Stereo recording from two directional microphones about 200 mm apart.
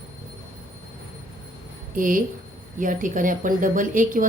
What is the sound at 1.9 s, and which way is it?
A woman's voice, 45° right (ahead or behind).